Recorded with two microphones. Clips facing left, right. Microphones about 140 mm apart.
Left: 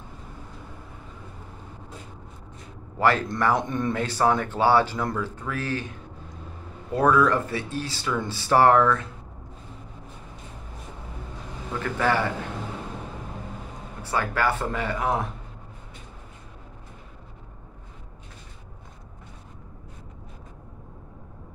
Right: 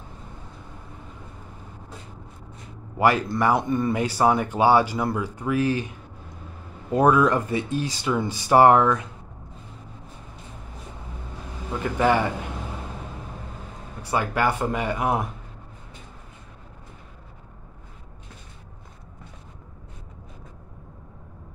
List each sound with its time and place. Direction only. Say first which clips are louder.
3.0 s speech: right 2 dB; 15° right (ahead or behind)
11.8 s speech: right 3 dB; 15° right (ahead or behind)
14.0 s speech: right 2 dB; 15° right (ahead or behind)